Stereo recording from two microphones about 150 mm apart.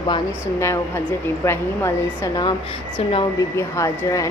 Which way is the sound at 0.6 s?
15° left (ahead or behind).